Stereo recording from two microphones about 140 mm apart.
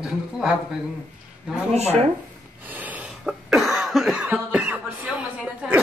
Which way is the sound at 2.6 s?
10° right (ahead or behind).